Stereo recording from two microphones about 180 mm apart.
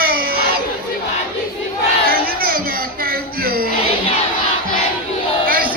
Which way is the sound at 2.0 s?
55° right (ahead or behind).